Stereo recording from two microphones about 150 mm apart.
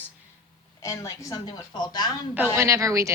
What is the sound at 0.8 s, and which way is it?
A woman's voice, 20° left (ahead or behind).